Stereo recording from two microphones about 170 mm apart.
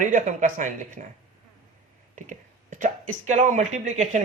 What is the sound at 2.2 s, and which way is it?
Speech, 50° right (ahead or behind).